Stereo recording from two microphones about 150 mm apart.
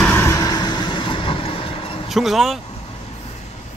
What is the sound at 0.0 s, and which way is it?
Vehicle, 15° left (ahead or behind).